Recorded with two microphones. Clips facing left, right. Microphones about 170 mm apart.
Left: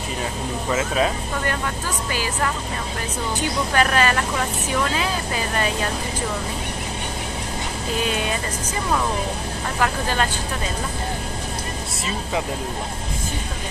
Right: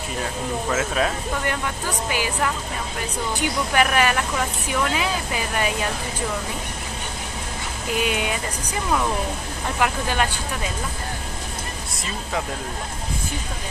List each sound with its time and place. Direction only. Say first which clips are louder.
0.7 s speech: left 2 dB; 5° left (ahead or behind)
2.0 s speech: right 1 dB; 15° right (ahead or behind)
3.3 s speech: even; 10° right (ahead or behind)
7.9 s speech: right 1 dB; 15° right (ahead or behind)
9.8 s speech: even; 15° right (ahead or behind)